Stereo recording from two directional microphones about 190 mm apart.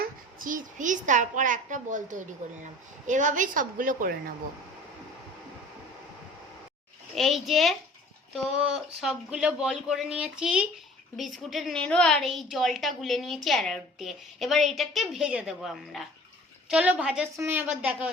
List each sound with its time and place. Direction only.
0.0 s a woman's voice: 45° right (ahead or behind)
7.2 s a woman's voice: centre (ahead or behind)